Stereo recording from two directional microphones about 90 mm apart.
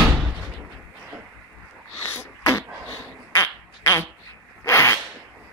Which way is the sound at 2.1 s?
30° left (ahead or behind).